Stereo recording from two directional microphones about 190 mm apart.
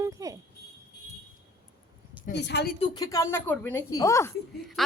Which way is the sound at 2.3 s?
65° left (ahead or behind).